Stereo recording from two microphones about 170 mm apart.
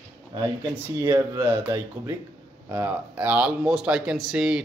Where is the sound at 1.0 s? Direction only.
20° right (ahead or behind).